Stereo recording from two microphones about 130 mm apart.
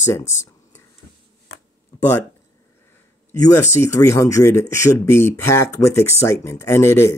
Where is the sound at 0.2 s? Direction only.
65° left (ahead or behind).